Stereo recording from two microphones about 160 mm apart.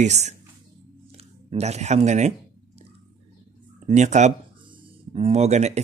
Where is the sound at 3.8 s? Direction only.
45° right (ahead or behind).